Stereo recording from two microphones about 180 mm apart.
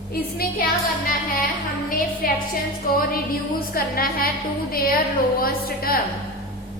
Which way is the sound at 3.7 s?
55° left (ahead or behind).